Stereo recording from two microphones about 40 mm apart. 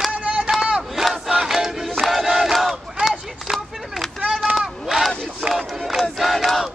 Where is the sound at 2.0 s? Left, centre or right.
Centre.